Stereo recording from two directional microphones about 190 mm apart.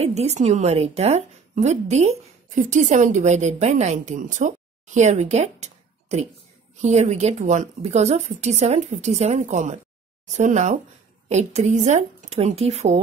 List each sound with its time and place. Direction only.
0.0 s a woman's voice: 35° right (ahead or behind)